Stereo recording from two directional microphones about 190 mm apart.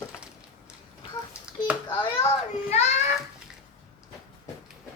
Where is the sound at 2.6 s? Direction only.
35° left (ahead or behind).